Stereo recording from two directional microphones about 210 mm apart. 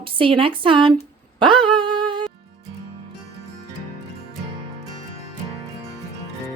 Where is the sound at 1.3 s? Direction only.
25° right (ahead or behind).